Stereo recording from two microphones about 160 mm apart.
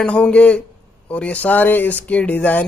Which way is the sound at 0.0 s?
10° left (ahead or behind).